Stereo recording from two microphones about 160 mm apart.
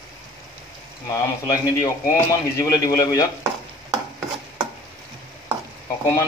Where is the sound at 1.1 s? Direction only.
20° left (ahead or behind).